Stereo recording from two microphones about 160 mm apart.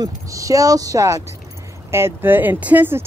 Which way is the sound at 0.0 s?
20° right (ahead or behind).